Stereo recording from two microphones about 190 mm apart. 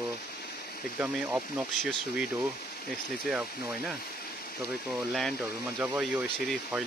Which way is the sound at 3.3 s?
Centre (ahead or behind).